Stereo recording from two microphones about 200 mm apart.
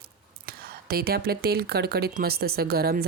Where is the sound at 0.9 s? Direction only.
50° right (ahead or behind).